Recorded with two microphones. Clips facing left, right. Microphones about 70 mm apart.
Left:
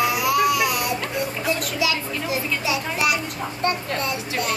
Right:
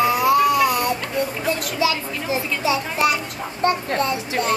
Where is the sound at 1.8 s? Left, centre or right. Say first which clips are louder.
Right 2 dB; right.